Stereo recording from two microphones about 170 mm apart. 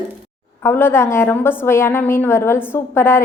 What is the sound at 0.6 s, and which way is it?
A woman's voice, 15° left (ahead or behind).